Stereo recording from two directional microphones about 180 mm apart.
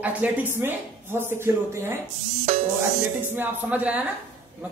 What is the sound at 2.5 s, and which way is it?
Music, 40° right (ahead or behind).